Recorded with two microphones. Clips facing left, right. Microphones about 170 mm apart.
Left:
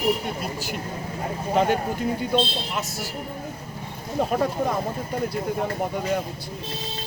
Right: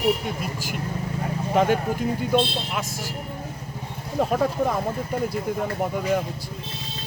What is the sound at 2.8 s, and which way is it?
Speech, 90° right.